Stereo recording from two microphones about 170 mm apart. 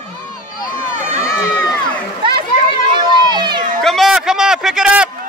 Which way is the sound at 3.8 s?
Centre (ahead or behind).